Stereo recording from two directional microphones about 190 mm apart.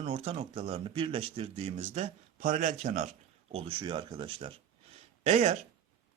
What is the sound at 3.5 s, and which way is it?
Speech, 30° right (ahead or behind).